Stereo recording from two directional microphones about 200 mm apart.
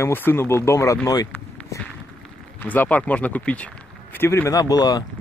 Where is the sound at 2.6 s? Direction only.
10° left (ahead or behind).